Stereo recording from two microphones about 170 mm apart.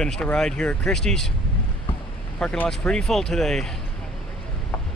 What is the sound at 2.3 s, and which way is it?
Speech, 10° left (ahead or behind).